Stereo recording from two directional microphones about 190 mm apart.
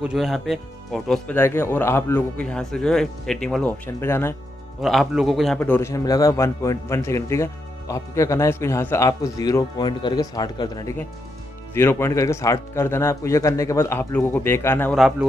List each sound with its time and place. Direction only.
0.0 s speech: centre (ahead or behind); by 4.4 s 15° left (ahead or behind)
4.8 s speech: centre (ahead or behind)
15.0 s speech: centre (ahead or behind)